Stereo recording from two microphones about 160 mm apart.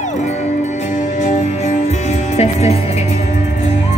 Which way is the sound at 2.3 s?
40° left (ahead or behind).